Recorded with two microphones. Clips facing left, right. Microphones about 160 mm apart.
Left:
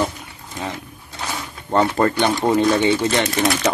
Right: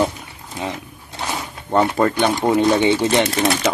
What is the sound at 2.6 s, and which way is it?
Speech, 20° right (ahead or behind).